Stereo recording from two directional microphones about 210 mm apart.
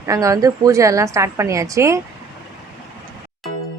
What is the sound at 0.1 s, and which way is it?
Speech, 15° right (ahead or behind).